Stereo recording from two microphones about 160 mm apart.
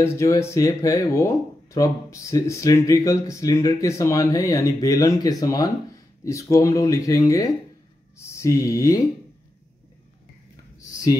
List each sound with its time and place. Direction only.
0.0 s speech: 15° left (ahead or behind)